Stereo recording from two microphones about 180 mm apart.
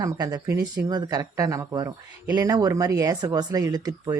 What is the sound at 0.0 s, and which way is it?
Speech, 20° right (ahead or behind).